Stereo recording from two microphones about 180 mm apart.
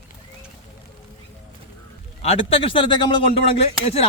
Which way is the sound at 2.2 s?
35° left (ahead or behind).